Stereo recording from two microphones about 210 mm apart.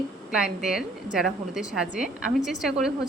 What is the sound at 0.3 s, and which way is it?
A woman's voice, 5° right (ahead or behind).